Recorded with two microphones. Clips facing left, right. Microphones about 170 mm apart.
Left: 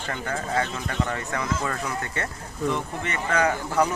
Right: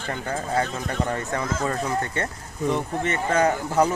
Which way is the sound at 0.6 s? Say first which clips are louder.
Right 2 dB; 35° right (ahead or behind).